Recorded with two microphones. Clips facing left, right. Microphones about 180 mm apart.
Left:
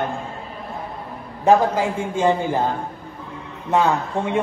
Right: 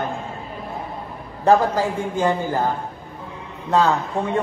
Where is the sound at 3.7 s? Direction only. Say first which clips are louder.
Even; 15° left (ahead or behind).